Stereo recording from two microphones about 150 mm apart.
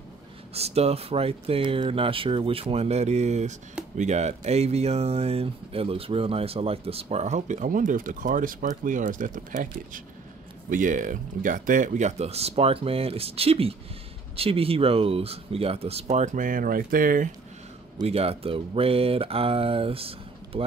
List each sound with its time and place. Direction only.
0.6 s speech: 45° right (ahead or behind); by 17.3 s 65° right (ahead or behind)
18.0 s speech: 40° right (ahead or behind)